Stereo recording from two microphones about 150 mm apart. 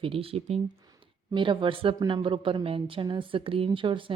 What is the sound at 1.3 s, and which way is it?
A woman's voice, 35° right (ahead or behind).